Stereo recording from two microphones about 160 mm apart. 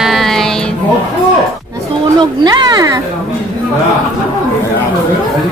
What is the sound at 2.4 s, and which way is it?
Speech, 25° right (ahead or behind).